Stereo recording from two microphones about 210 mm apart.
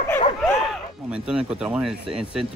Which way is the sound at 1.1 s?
5° right (ahead or behind).